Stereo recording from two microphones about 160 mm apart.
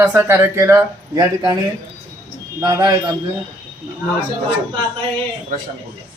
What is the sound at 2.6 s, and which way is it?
Speech, 20° right (ahead or behind).